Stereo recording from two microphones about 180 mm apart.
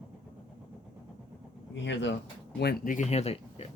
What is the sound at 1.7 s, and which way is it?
Speech, 80° left.